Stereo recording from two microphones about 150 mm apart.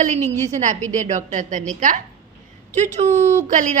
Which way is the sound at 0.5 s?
55° right (ahead or behind).